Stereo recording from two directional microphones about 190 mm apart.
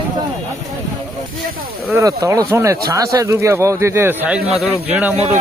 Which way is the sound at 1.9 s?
15° right (ahead or behind).